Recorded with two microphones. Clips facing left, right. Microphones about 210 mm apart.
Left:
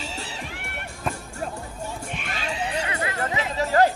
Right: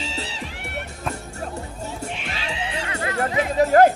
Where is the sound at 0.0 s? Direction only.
50° left (ahead or behind).